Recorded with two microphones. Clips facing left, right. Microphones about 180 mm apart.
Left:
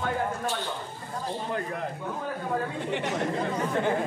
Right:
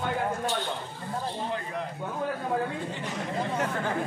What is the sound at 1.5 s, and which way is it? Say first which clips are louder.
Speech: left 2 dB; 50° left (ahead or behind).